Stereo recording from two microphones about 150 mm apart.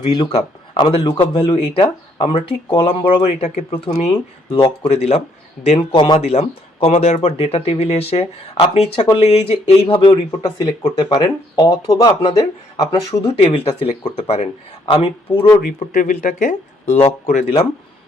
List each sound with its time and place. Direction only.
0.3 s a man's voice: 40° left (ahead or behind)
13.4 s speech: 40° left (ahead or behind)
15.6 s speech: 80° left; by 17.4 s 50° left (ahead or behind)